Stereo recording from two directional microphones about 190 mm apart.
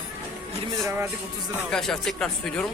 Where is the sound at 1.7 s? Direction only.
5° left (ahead or behind).